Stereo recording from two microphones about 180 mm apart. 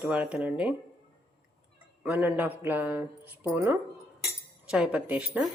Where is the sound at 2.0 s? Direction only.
10° right (ahead or behind).